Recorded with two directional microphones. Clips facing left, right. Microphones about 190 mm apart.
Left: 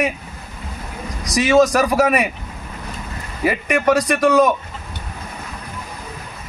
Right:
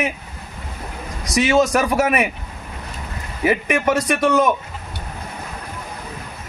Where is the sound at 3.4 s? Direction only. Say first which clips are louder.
Even; centre (ahead or behind).